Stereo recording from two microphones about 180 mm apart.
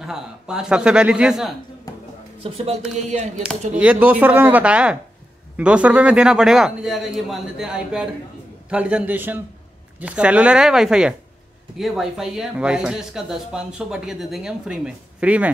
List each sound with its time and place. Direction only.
0.0 s speech: 5° right (ahead or behind)
1.9 s a sound: 20° left (ahead or behind)
2.4 s speech: 35° right (ahead or behind)
3.4 s speech: 5° right (ahead or behind)